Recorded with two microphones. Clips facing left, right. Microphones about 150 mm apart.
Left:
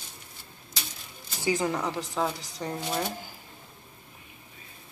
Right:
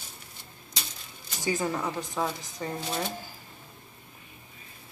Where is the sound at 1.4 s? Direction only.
10° left (ahead or behind).